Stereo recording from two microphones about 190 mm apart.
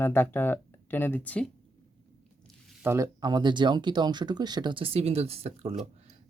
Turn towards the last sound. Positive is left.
turn(degrees=-30)  # may be behind; listen again after turning